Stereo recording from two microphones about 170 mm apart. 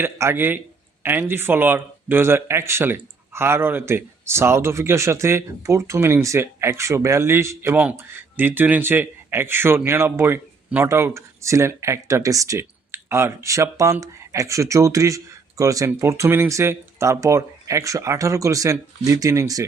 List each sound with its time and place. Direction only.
0.0 s speech: 15° right (ahead or behind)